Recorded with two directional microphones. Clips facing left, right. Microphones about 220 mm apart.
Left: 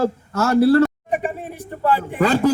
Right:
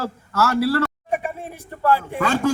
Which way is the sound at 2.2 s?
35° left (ahead or behind).